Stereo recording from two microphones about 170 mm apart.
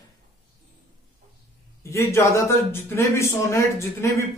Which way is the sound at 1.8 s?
15° left (ahead or behind).